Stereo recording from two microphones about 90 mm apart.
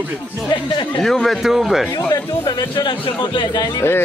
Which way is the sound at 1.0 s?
5° left (ahead or behind).